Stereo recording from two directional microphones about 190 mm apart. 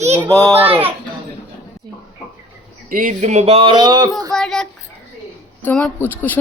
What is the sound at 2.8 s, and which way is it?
Speech, 45° right (ahead or behind).